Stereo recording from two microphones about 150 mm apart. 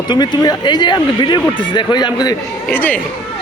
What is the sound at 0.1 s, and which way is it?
Speech, 30° left (ahead or behind).